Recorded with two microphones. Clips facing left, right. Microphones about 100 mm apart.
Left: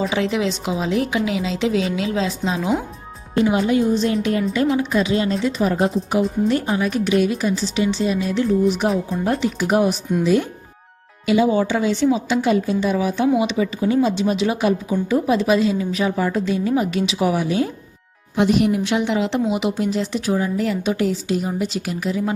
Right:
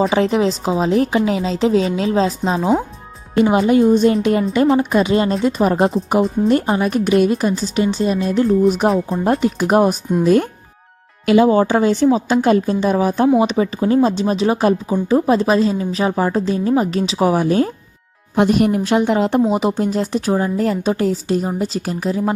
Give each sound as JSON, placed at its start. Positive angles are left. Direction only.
{"t": 0.1, "sound": "speech", "side_deg": -40}
{"t": 3.8, "sound": "a woman's voice", "side_deg": -55}